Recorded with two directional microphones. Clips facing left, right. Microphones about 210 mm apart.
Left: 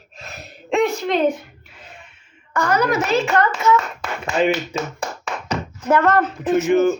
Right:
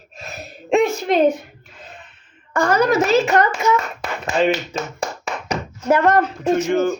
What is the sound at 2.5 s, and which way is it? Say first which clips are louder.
Hands: right 3 dB; 25° right (ahead or behind).